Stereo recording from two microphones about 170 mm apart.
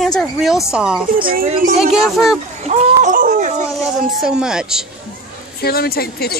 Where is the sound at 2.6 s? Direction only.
40° right (ahead or behind).